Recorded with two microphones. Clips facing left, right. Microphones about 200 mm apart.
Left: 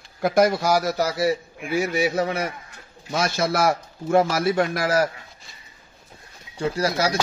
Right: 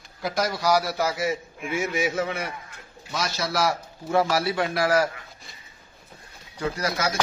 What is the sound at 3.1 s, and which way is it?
Speech, 55° left (ahead or behind).